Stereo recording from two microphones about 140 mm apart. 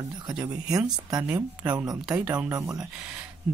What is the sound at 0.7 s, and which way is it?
Speech, 5° right (ahead or behind).